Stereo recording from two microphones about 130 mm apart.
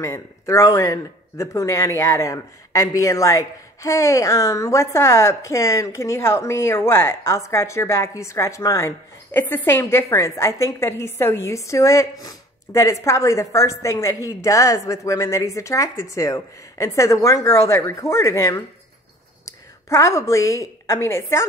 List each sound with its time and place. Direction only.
0.0 s a man's voice: 20° left (ahead or behind)